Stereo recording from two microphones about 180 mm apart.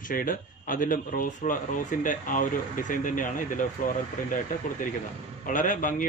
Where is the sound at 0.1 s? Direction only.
50° left (ahead or behind).